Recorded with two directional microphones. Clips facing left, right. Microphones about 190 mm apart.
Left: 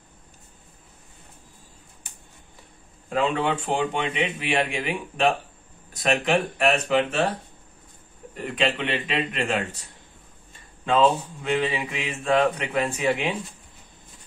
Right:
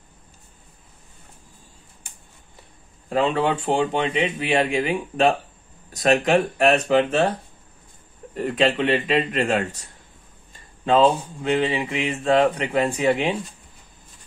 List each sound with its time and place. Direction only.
3.1 s speech: 35° right (ahead or behind)
8.5 s speech: 40° right (ahead or behind)
10.9 s speech: 35° right (ahead or behind)